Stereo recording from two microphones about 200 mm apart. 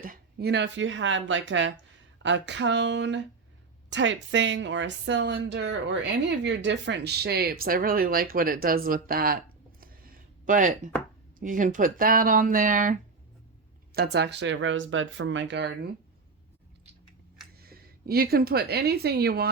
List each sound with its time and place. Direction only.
0.0 s a woman's voice: 50° right (ahead or behind)
10.4 s speech: 40° right (ahead or behind)
13.9 s a woman's voice: 55° right (ahead or behind)
17.6 s a woman's voice: 50° right (ahead or behind)